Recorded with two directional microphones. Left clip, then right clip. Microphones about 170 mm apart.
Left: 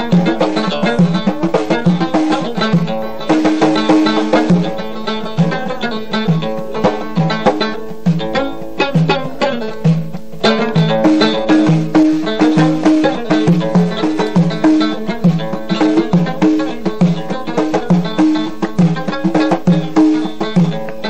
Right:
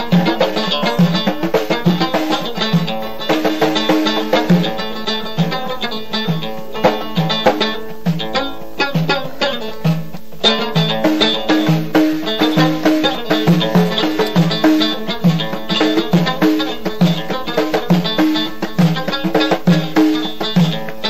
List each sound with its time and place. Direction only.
0.2 s music: 35° right (ahead or behind)
6.8 s music: 35° right (ahead or behind)